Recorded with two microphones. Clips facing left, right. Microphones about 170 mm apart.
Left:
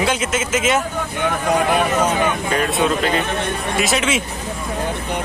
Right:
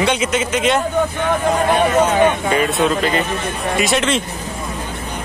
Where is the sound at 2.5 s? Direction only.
Centre (ahead or behind).